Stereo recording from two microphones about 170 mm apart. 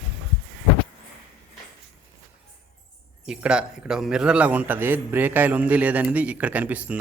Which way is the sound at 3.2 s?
5° right (ahead or behind).